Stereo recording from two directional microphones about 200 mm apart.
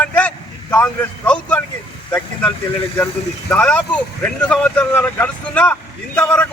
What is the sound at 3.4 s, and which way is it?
Speech, 5° left (ahead or behind).